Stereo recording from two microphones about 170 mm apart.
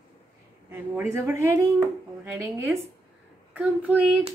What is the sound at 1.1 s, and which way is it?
Speech, 15° right (ahead or behind).